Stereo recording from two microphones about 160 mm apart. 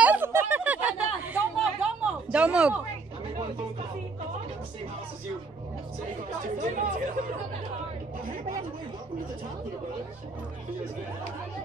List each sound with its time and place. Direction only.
0.0 s chatter: 10° right (ahead or behind)
2.3 s speech: 5° right (ahead or behind)
6.6 s speech: 50° right (ahead or behind)